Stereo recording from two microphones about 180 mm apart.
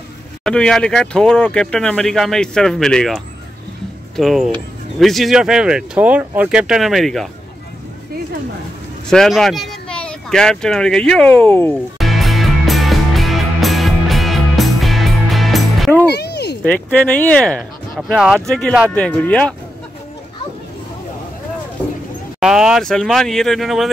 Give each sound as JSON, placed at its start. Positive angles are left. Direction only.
{"t": 0.4, "sound": "speech", "side_deg": 5}
{"t": 4.2, "sound": "speech", "side_deg": 0}
{"t": 9.1, "sound": "speech", "side_deg": 0}
{"t": 12.0, "sound": "music", "side_deg": 0}
{"t": 16.1, "sound": "a sound", "side_deg": 65}
{"t": 16.6, "sound": "speech", "side_deg": 5}
{"t": 22.4, "sound": "speech", "side_deg": 0}